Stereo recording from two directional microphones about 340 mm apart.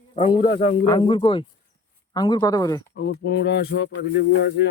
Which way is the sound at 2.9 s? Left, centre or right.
Left.